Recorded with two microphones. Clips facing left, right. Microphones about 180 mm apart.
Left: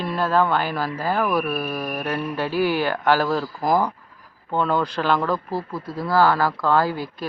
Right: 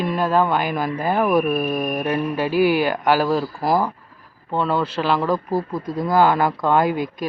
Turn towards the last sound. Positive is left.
turn(degrees=-20)  # may be behind; listen again after turning